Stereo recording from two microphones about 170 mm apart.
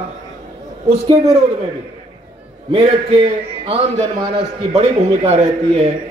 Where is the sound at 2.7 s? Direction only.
30° right (ahead or behind).